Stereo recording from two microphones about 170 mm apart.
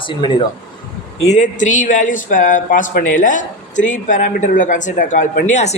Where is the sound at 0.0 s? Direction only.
30° left (ahead or behind).